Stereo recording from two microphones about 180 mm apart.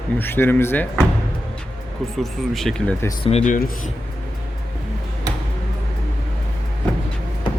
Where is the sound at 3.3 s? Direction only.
40° left (ahead or behind).